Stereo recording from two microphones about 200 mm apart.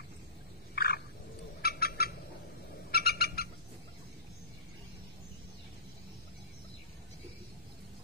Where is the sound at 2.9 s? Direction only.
50° left (ahead or behind).